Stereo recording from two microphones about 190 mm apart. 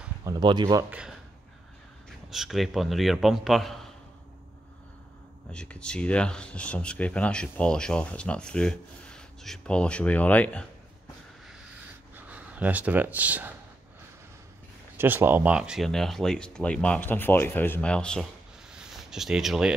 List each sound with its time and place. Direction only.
0.2 s speech: 20° right (ahead or behind)
0.8 s speech: 5° right (ahead or behind)
5.5 s speech: 5° left (ahead or behind)
12.3 s speech: 10° right (ahead or behind)
15.0 s speech: 10° right (ahead or behind); by 18.2 s 5° left (ahead or behind)
18.7 s a sound: 5° right (ahead or behind)